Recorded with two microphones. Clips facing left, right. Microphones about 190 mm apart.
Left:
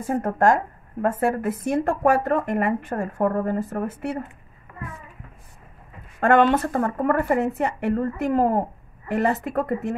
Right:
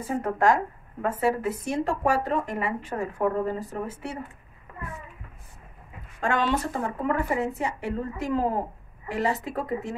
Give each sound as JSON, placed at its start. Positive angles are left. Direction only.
{"t": 0.0, "sound": "speech", "side_deg": 50}
{"t": 6.2, "sound": "speech", "side_deg": 55}